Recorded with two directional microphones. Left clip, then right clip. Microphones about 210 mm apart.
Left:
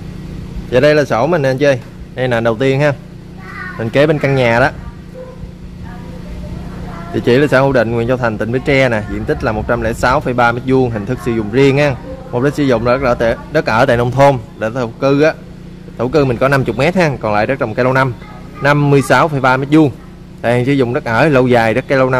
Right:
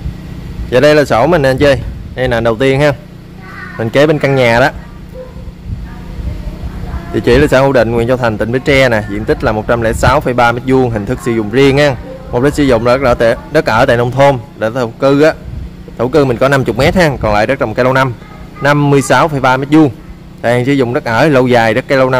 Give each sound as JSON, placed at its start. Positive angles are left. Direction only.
{"t": 0.7, "sound": "speech", "side_deg": -15}
{"t": 2.1, "sound": "speech", "side_deg": -10}
{"t": 7.2, "sound": "a man's voice", "side_deg": -10}